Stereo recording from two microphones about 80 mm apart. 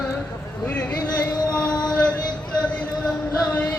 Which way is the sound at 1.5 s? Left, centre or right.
Centre.